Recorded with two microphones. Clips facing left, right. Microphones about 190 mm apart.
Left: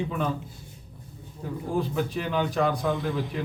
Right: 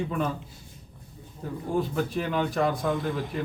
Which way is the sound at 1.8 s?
Centre (ahead or behind).